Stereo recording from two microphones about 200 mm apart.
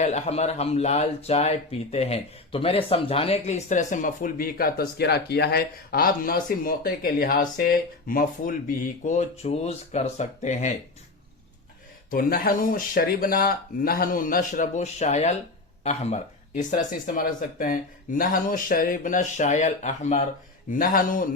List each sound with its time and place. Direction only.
0.0 s speech: 35° left (ahead or behind)
12.1 s speech: 45° left (ahead or behind)